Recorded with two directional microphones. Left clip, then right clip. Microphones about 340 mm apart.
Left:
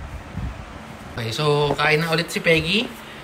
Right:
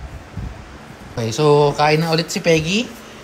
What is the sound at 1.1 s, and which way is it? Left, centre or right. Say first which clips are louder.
Speech: right 7 dB; centre.